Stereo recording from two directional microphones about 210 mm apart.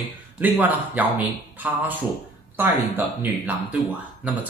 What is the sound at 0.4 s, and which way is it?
Speech, 10° right (ahead or behind).